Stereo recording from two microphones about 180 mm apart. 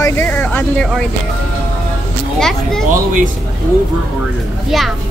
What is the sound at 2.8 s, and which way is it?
Speech, 50° right (ahead or behind).